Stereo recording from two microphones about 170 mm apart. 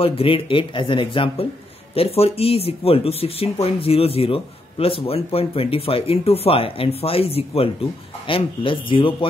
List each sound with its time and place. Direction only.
0.0 s speech: 35° left (ahead or behind)